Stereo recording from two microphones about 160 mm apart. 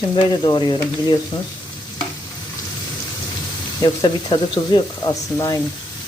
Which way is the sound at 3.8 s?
25° left (ahead or behind).